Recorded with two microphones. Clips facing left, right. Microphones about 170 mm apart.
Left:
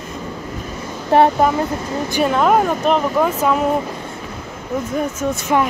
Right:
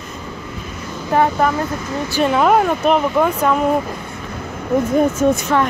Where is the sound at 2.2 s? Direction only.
Centre (ahead or behind).